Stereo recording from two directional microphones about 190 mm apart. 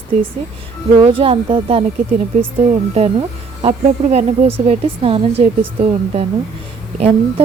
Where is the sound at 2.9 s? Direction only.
30° right (ahead or behind).